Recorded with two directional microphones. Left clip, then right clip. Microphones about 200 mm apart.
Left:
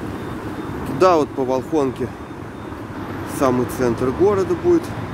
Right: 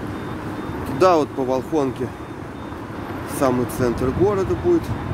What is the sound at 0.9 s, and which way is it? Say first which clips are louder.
Speech: left 1 dB; centre (ahead or behind).